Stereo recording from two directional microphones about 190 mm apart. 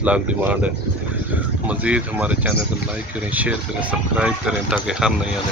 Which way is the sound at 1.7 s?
5° right (ahead or behind).